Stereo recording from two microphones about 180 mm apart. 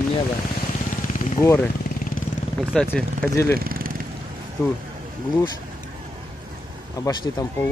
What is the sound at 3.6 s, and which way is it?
Vehicle, 55° right (ahead or behind).